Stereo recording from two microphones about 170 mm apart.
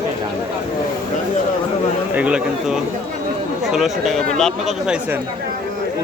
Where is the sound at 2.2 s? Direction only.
5° right (ahead or behind).